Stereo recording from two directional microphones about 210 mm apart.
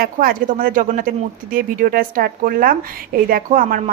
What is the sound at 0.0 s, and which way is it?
A woman's voice, 45° right (ahead or behind).